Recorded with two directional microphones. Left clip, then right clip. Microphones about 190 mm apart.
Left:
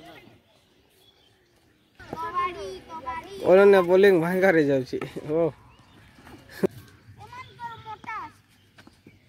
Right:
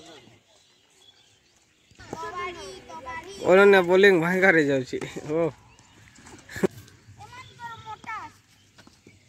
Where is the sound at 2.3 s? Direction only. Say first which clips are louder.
Left 6 dB; 50° right (ahead or behind).